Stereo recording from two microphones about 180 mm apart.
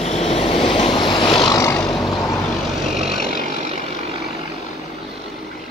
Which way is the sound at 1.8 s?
Centre (ahead or behind).